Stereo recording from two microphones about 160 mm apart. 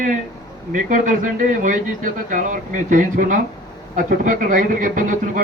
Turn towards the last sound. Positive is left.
turn(degrees=-55)  # may be behind; listen again after turning